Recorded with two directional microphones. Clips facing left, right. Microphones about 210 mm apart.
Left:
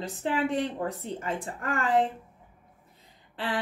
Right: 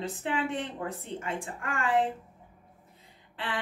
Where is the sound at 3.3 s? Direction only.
35° left (ahead or behind).